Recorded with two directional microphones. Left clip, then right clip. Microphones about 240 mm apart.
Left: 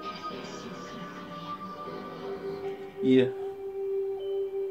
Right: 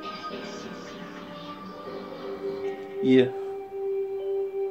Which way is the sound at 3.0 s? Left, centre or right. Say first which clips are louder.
Right 3 dB; right.